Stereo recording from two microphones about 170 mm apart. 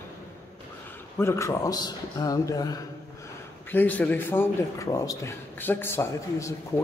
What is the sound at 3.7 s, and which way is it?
A man's voice, 10° left (ahead or behind).